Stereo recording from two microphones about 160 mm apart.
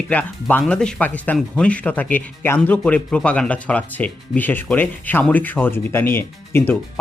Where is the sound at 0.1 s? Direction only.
10° left (ahead or behind).